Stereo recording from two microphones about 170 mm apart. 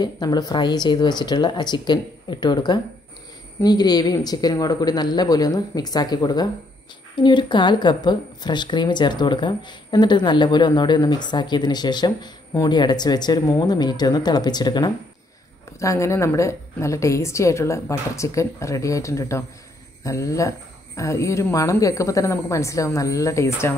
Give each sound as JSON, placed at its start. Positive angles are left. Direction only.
{"t": 0.0, "sound": "a woman's voice", "side_deg": 25}